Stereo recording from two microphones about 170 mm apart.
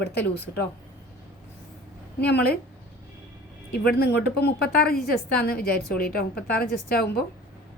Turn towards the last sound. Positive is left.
turn(degrees=65)  # may be behind; listen again after turning